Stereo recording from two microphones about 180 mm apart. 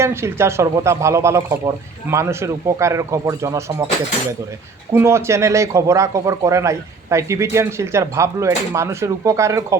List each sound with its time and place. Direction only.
0.0 s speech: 15° right (ahead or behind)
4.9 s speech: 15° right (ahead or behind)